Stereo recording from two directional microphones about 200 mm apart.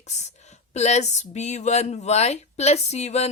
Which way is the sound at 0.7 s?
35° left (ahead or behind).